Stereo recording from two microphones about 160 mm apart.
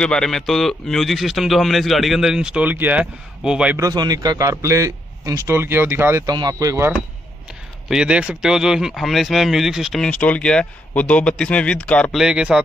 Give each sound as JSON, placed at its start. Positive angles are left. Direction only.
{"t": 0.0, "sound": "speech", "side_deg": 5}
{"t": 3.7, "sound": "a man's voice", "side_deg": -25}
{"t": 7.9, "sound": "speech", "side_deg": -5}